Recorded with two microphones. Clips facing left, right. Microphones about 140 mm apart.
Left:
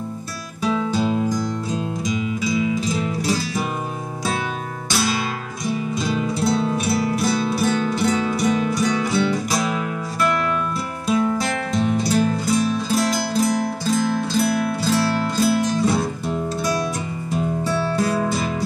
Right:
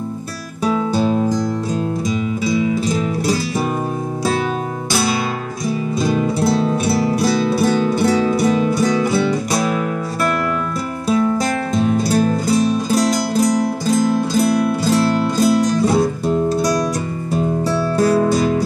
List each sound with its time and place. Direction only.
0.7 s music: 35° right (ahead or behind)
5.7 s music: 30° right (ahead or behind)
11.1 s music: 40° right (ahead or behind)